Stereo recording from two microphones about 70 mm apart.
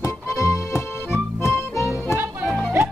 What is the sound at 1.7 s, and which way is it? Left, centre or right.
Music, right.